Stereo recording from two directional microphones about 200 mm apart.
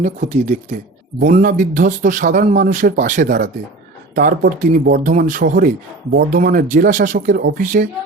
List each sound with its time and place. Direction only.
0.0 s speech: 35° right (ahead or behind)